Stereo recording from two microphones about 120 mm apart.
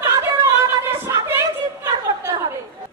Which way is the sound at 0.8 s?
20° right (ahead or behind).